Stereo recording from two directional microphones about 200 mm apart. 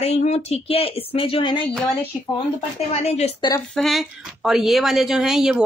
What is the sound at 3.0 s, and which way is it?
Speech, 30° left (ahead or behind).